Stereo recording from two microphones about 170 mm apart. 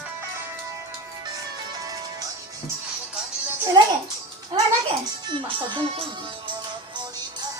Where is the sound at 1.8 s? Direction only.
20° right (ahead or behind).